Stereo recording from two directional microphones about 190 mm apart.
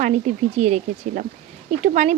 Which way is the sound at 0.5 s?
35° right (ahead or behind).